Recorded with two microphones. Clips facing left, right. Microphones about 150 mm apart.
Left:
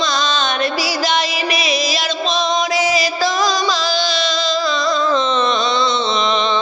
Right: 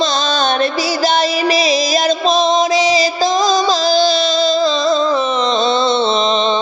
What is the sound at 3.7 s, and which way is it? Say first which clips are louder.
Music: right 6 dB; 40° right (ahead or behind).